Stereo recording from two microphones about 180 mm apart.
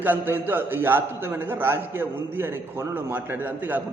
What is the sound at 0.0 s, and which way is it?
A man's voice, 10° right (ahead or behind).